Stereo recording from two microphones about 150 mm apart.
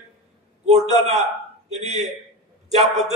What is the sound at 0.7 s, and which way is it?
A man's voice, 45° right (ahead or behind).